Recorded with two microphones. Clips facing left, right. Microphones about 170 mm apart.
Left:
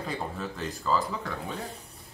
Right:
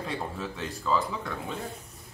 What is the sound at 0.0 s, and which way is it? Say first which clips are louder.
Speech: even; centre (ahead or behind).